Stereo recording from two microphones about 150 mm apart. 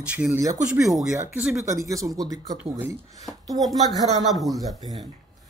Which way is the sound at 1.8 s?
20° right (ahead or behind).